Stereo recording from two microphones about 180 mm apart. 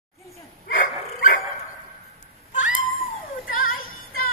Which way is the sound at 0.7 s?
50° left (ahead or behind).